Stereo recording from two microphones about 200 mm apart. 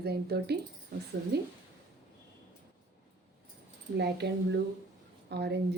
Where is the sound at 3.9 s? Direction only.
55° right (ahead or behind).